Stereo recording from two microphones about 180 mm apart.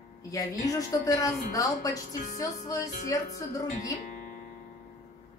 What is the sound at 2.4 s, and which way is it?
Music, 20° left (ahead or behind).